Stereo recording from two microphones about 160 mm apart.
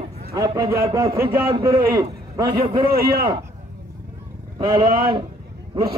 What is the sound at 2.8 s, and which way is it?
Speech, 70° right (ahead or behind).